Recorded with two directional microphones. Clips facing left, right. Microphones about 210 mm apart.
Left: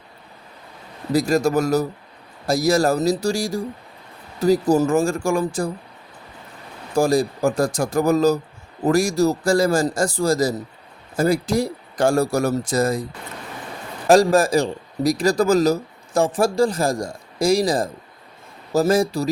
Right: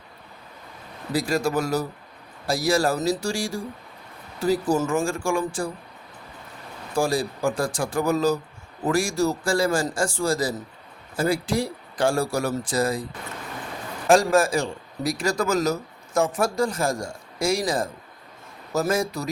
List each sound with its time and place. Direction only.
1.1 s a man's voice: 40° left (ahead or behind)
6.9 s a man's voice: 40° left (ahead or behind)
14.1 s a man's voice: 35° left (ahead or behind)